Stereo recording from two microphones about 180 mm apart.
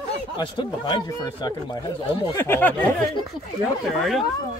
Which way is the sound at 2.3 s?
10° left (ahead or behind).